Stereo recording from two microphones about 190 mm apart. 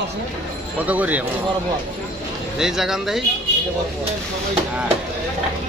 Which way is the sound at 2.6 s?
Centre (ahead or behind).